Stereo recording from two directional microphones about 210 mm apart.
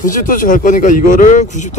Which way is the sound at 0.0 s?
40° left (ahead or behind).